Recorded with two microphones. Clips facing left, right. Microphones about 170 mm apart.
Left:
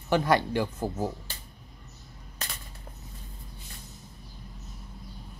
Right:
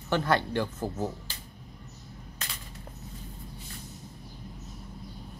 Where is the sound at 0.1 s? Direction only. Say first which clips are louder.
Left 2 dB; 10° left (ahead or behind).